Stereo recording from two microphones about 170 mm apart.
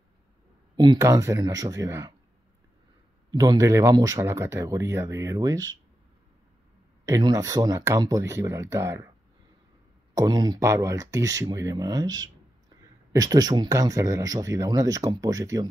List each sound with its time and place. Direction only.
0.7 s speech: 20° right (ahead or behind)
3.3 s speech: 20° right (ahead or behind)
7.1 s speech: 20° right (ahead or behind)
10.1 s speech: 25° right (ahead or behind)